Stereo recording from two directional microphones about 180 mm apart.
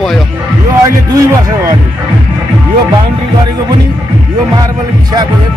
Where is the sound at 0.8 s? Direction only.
15° right (ahead or behind).